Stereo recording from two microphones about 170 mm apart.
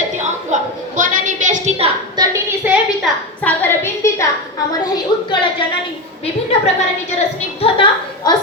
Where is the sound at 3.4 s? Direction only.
10° left (ahead or behind).